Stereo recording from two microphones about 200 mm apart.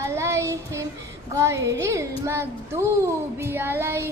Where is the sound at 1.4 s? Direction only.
15° right (ahead or behind).